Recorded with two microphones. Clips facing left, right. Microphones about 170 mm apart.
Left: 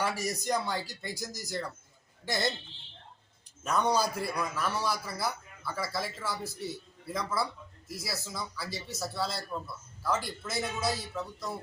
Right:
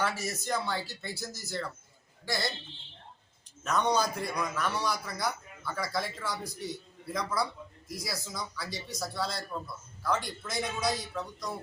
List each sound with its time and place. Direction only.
0.0 s speech: 10° left (ahead or behind)
3.6 s a man's voice: 10° left (ahead or behind)